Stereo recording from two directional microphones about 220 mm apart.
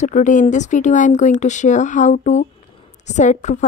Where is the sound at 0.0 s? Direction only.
35° left (ahead or behind).